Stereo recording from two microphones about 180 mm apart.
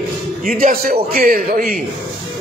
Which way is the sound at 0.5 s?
50° right (ahead or behind).